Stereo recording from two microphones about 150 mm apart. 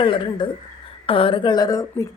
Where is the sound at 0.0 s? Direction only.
35° left (ahead or behind).